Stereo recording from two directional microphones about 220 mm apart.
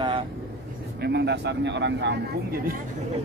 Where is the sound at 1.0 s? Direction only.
50° right (ahead or behind).